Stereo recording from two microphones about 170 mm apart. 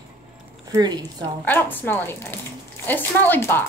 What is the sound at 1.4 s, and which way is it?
A woman's voice, 10° left (ahead or behind).